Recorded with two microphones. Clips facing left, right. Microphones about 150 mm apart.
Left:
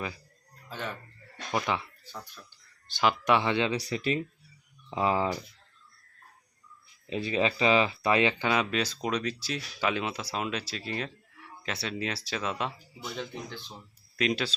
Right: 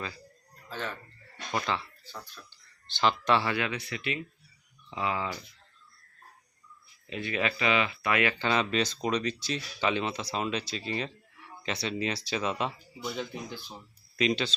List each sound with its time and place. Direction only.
0.7 s speech: 15° left (ahead or behind)
3.8 s speech: 35° left (ahead or behind)
7.1 s speech: 30° left (ahead or behind)
8.4 s speech: 5° left (ahead or behind); by 13.7 s 10° right (ahead or behind)
14.2 s speech: 5° left (ahead or behind)